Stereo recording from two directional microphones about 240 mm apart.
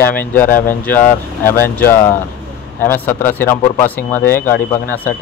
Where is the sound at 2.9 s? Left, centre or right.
Centre.